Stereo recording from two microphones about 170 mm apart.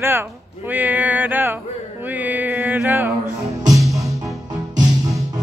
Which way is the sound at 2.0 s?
10° right (ahead or behind).